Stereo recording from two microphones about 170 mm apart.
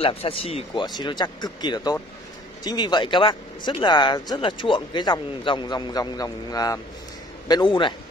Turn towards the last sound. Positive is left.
turn(degrees=25)  # may be behind; listen again after turning